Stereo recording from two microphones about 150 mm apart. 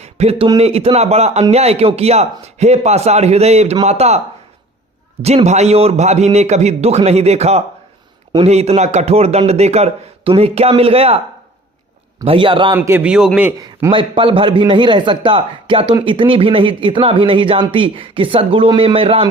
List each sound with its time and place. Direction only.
0.0 s a sound: 45° right (ahead or behind)
0.6 s a man's voice: 40° right (ahead or behind)
5.2 s a man's voice: 45° right (ahead or behind)
12.2 s speech: 35° right (ahead or behind)
12.7 s a man's voice: 15° right (ahead or behind)
13.9 s speech: 35° right (ahead or behind)